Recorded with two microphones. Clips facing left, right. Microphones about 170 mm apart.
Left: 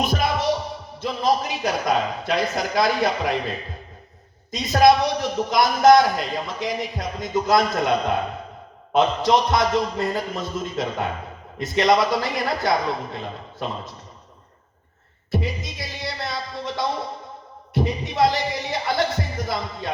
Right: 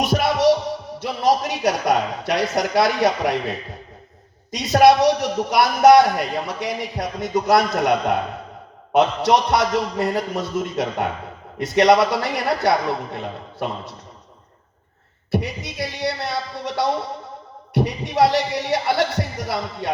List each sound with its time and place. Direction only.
0.0 s music: 70° right (ahead or behind)
1.0 s a man's voice: 70° right (ahead or behind)
4.8 s a man's voice: 70° right (ahead or behind)
15.3 s a sound: 65° right (ahead or behind)
17.7 s a man's voice: 70° right (ahead or behind)